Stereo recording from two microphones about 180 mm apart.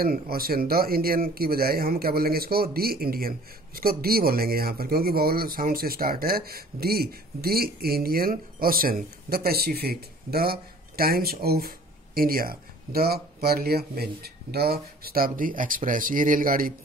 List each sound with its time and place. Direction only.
0.0 s speech: 55° right (ahead or behind)